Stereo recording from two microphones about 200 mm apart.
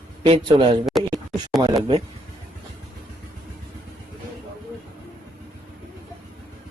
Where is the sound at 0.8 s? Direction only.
Centre (ahead or behind).